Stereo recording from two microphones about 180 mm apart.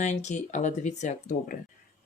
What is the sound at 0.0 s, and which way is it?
Speech, 40° left (ahead or behind).